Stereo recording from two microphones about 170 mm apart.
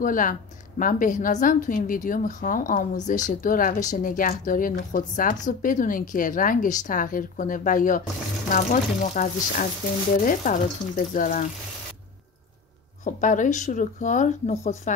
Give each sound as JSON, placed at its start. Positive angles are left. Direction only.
{"t": 0.0, "sound": "a woman's voice", "side_deg": 50}
{"t": 13.0, "sound": "a woman's voice", "side_deg": 50}